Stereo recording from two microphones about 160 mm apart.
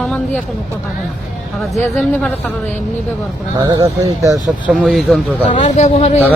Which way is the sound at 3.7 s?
20° right (ahead or behind).